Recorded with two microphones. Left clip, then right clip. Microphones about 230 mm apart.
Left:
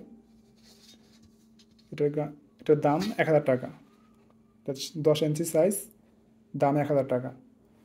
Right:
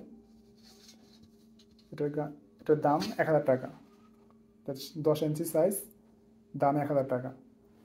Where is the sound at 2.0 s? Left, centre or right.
Left.